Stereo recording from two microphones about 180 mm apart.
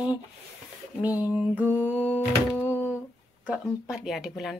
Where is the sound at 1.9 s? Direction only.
10° left (ahead or behind).